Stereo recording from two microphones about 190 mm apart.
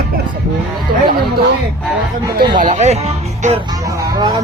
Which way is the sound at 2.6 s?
35° right (ahead or behind).